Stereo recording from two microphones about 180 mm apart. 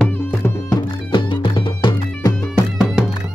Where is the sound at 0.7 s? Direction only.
25° left (ahead or behind).